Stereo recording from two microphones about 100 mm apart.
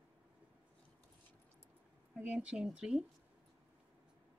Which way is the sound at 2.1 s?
10° right (ahead or behind).